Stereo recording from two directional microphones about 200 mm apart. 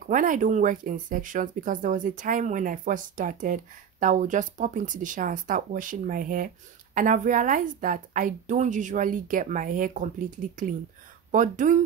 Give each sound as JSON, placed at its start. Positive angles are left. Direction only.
{"t": 0.0, "sound": "speech", "side_deg": -40}